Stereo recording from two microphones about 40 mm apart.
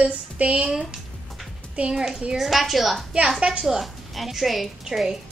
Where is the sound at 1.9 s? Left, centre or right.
Centre.